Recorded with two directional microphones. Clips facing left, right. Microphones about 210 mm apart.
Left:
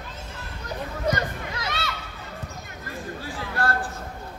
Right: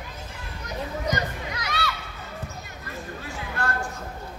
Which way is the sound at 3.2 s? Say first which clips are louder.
Left 3 dB; 35° left (ahead or behind).